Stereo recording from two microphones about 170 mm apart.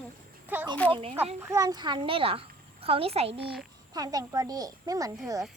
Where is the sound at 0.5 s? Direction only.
10° right (ahead or behind).